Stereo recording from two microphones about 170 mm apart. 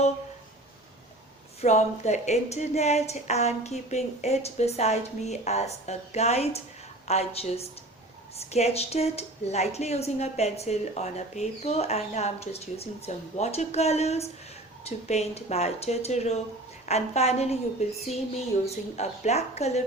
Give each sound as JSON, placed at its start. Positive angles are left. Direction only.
{"t": 1.6, "sound": "a woman's voice", "side_deg": 45}